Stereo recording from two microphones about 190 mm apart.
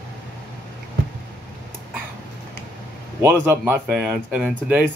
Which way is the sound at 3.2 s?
10° right (ahead or behind).